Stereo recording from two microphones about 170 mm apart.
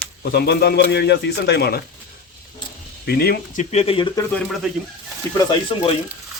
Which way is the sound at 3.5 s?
40° left (ahead or behind).